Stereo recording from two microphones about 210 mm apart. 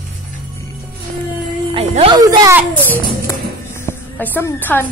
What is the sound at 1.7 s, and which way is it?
Music, 25° right (ahead or behind).